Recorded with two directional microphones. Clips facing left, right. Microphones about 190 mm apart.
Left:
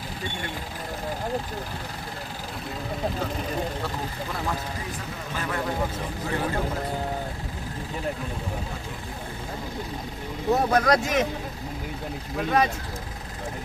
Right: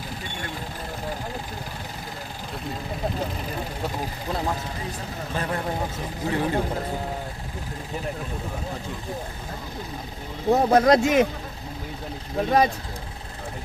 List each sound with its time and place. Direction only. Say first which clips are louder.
5.3 s speech: right 3 dB; 30° right (ahead or behind)
6.2 s speech: right 4 dB; 20° right (ahead or behind)
10.5 s speech: right 4 dB; 25° right (ahead or behind)
12.4 s speech: right 3 dB; 35° right (ahead or behind)